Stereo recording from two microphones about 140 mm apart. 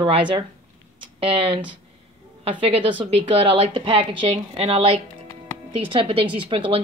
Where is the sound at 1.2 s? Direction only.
40° right (ahead or behind).